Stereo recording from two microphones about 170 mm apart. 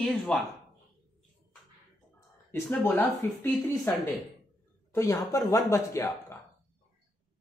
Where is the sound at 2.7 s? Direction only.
10° left (ahead or behind).